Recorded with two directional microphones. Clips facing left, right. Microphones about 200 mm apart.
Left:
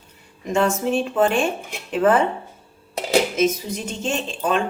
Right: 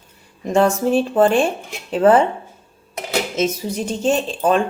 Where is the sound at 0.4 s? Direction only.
35° right (ahead or behind).